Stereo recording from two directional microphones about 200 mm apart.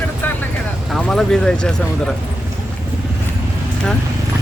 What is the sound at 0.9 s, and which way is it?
Speech, centre (ahead or behind).